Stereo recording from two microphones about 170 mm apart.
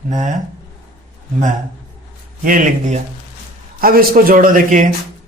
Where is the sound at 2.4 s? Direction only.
50° right (ahead or behind).